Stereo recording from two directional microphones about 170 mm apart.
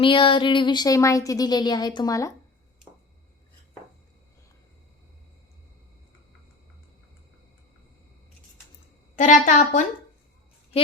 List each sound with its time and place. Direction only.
0.0 s speech: 30° left (ahead or behind)
9.1 s a woman's voice: 45° left (ahead or behind)